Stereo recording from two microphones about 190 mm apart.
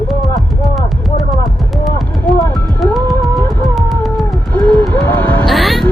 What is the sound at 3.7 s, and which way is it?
Music, centre (ahead or behind).